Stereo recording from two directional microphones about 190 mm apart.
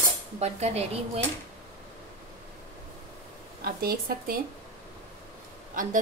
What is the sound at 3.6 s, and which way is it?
Speech, 50° right (ahead or behind).